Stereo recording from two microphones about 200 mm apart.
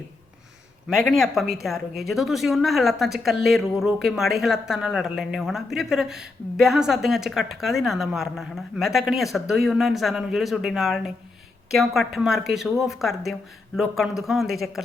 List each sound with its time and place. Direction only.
0.9 s speech: centre (ahead or behind)